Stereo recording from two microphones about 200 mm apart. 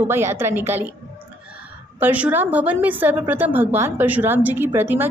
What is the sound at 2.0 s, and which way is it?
A woman's voice, 10° right (ahead or behind).